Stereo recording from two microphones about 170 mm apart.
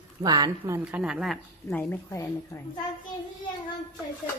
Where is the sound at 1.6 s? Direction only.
10° left (ahead or behind).